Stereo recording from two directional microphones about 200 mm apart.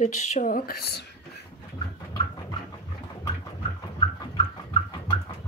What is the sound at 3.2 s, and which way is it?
Horse, 25° left (ahead or behind).